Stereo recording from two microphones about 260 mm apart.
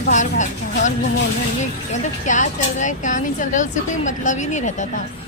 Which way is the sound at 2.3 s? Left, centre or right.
Left.